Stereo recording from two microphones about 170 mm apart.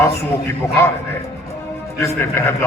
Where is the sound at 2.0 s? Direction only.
15° left (ahead or behind).